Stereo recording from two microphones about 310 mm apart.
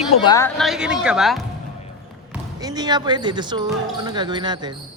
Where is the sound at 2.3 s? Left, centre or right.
Centre.